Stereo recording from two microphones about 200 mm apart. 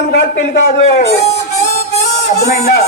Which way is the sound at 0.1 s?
50° left (ahead or behind).